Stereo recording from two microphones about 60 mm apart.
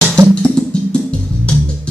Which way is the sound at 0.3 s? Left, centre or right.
Centre.